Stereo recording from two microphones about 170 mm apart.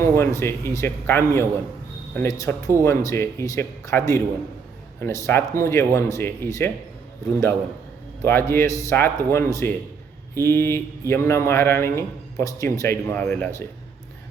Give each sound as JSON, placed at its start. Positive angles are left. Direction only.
{"t": 0.0, "sound": "speech", "side_deg": 15}
{"t": 8.2, "sound": "speech", "side_deg": 15}